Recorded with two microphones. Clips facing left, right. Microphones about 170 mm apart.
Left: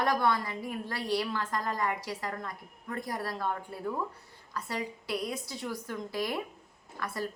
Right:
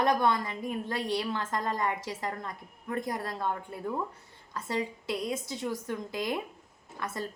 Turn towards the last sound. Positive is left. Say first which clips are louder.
# even
turn(degrees=-20)  # may be behind; listen again after turning